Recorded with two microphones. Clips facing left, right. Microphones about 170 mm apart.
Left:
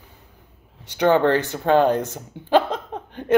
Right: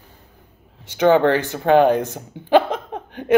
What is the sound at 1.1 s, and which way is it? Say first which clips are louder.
Speech: right 2 dB; 20° right (ahead or behind).